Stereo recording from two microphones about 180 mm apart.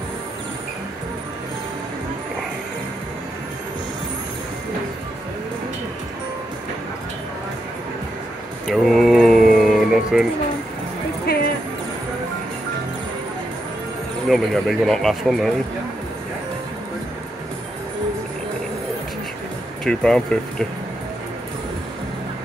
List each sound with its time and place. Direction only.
8.6 s mantra: centre (ahead or behind)
11.3 s music: 60° left (ahead or behind)
14.3 s speech: centre (ahead or behind)
19.8 s speech: 5° left (ahead or behind)